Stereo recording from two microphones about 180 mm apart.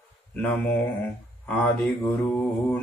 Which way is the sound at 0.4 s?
10° left (ahead or behind).